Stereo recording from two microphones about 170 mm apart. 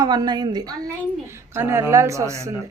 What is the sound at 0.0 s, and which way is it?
Speech, 25° right (ahead or behind).